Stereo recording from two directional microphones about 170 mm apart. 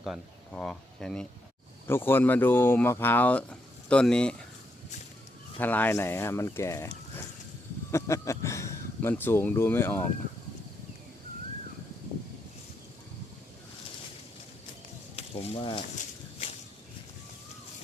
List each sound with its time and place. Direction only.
0.0 s speech: centre (ahead or behind)
5.5 s speech: 10° left (ahead or behind)
15.1 s speech: 35° left (ahead or behind)